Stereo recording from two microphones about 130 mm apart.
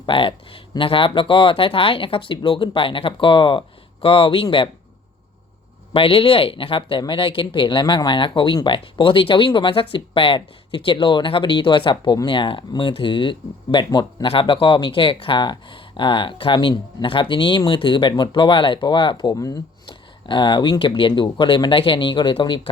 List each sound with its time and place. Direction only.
0.0 s speech: 40° left (ahead or behind)
5.9 s speech: 45° left (ahead or behind); by 19.6 s 25° left (ahead or behind)
19.9 s speech: 40° left (ahead or behind)